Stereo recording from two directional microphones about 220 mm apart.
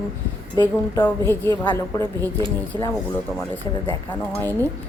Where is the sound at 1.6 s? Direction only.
15° left (ahead or behind).